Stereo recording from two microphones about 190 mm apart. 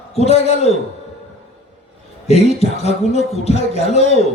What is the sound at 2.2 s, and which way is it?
A man's voice, 35° left (ahead or behind).